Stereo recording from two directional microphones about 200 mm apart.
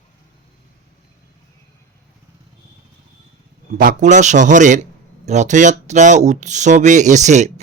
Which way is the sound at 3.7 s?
45° right (ahead or behind).